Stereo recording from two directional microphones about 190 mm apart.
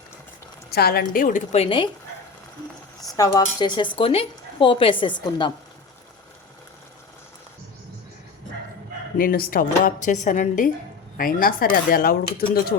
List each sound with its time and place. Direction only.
0.7 s a woman's voice: 55° left (ahead or behind)
1.5 s a woman's voice: 30° left (ahead or behind)
3.0 s speech: 20° left (ahead or behind)
3.9 s a woman's voice: 30° left (ahead or behind)
9.1 s a woman's voice: 50° left (ahead or behind)